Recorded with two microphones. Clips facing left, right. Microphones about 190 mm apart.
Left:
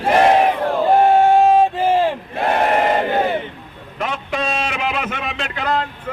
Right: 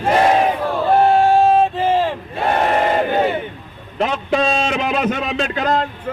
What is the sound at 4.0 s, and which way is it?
A man's voice, 35° right (ahead or behind).